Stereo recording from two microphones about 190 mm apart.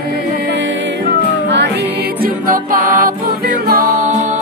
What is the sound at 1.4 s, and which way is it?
Music, 65° right (ahead or behind).